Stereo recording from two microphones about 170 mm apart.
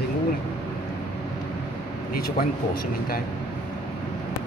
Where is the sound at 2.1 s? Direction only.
60° left (ahead or behind).